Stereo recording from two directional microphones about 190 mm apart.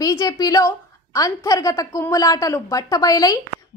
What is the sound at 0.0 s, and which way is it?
A woman's voice, 20° left (ahead or behind).